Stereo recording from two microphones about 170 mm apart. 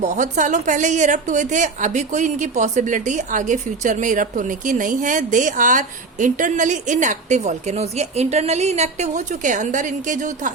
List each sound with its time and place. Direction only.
0.0 s a woman's voice: 45° right (ahead or behind)